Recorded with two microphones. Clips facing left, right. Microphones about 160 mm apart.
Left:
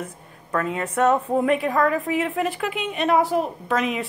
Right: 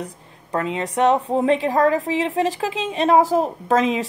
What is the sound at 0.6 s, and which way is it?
A woman's voice, 20° right (ahead or behind).